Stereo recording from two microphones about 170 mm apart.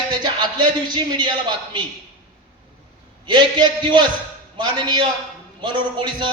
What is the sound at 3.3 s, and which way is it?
A man's voice, 25° right (ahead or behind).